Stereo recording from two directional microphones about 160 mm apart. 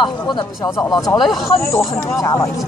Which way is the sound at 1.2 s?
Centre (ahead or behind).